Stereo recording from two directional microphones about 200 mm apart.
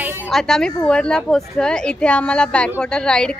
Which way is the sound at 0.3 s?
Centre (ahead or behind).